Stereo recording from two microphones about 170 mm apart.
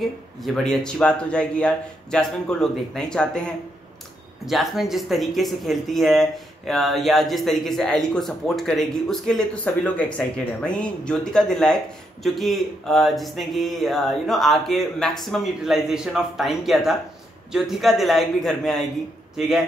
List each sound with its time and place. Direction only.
0.4 s speech: centre (ahead or behind)